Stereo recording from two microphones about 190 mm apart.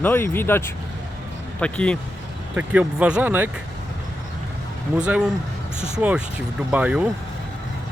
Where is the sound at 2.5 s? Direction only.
10° right (ahead or behind).